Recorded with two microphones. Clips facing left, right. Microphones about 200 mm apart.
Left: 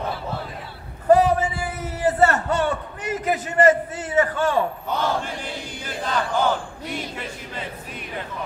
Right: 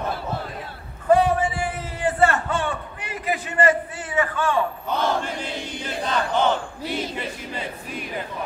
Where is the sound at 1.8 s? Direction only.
40° left (ahead or behind).